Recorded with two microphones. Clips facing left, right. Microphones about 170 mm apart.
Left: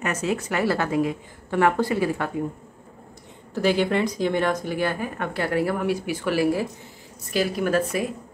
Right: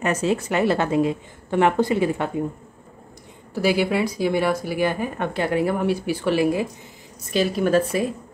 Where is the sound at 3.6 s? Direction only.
10° right (ahead or behind); by 8.0 s 30° right (ahead or behind).